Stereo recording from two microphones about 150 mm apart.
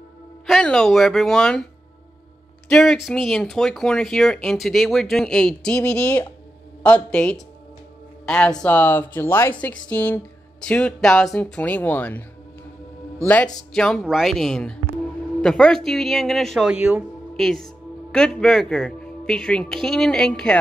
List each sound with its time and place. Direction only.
0.5 s speech: 5° left (ahead or behind)
2.7 s speech: centre (ahead or behind)